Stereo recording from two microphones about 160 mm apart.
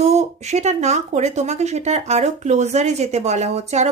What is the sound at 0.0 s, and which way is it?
Speech, 45° right (ahead or behind).